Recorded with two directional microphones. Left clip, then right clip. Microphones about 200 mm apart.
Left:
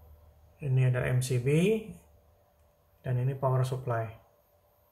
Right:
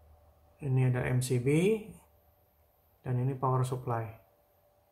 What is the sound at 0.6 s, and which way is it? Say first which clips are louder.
Speech: left 1 dB; 10° right (ahead or behind).